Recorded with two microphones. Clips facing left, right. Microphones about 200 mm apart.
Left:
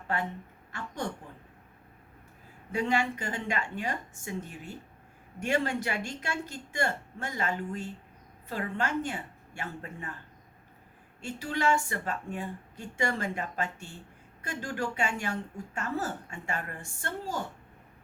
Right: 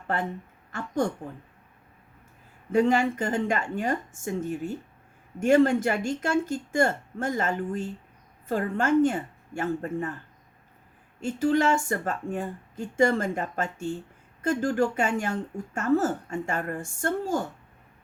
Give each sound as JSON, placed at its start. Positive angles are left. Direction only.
{"t": 2.7, "sound": "speech", "side_deg": -45}
{"t": 11.2, "sound": "speech", "side_deg": -45}